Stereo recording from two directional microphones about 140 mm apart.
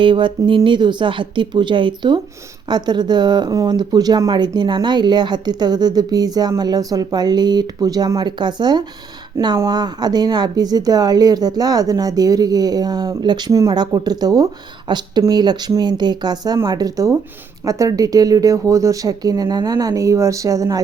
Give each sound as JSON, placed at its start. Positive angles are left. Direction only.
{"t": 0.0, "sound": "speech", "side_deg": -35}